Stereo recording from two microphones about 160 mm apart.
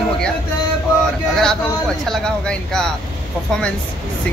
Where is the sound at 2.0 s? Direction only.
5° left (ahead or behind).